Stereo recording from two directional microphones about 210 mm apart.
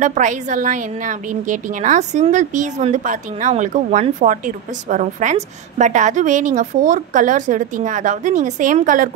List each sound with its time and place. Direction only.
0.0 s a woman's voice: 35° right (ahead or behind)